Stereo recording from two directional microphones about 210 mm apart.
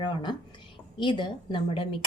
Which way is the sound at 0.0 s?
20° left (ahead or behind).